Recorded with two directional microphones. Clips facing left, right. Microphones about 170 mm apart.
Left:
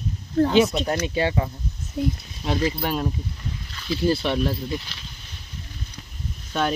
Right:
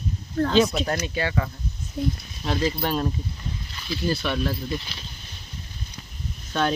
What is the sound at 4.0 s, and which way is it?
Speech, 30° left (ahead or behind).